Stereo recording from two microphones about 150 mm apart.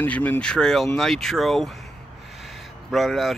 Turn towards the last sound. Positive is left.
turn(degrees=0)  # may be behind; listen again after turning